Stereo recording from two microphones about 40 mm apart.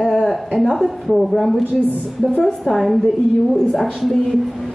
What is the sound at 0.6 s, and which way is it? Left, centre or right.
A woman's voice, centre.